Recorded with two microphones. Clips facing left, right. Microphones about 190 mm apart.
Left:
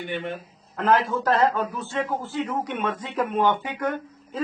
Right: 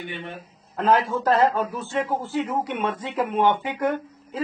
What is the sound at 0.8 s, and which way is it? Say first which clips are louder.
A man's voice: right 1 dB; 20° right (ahead or behind).